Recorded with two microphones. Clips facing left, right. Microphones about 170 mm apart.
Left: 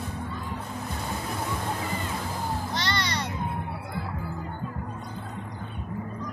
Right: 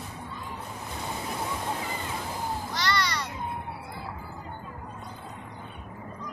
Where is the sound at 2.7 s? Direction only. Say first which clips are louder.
Right 1 dB; 25° left (ahead or behind).